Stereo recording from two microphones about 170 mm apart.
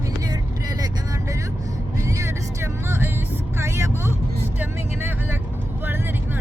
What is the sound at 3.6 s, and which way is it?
Vehicle, 15° right (ahead or behind).